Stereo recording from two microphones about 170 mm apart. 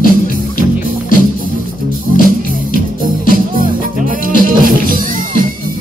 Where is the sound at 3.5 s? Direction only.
55° right (ahead or behind).